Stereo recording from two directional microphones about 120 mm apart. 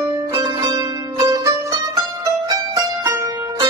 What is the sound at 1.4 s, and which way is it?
Music, 30° right (ahead or behind).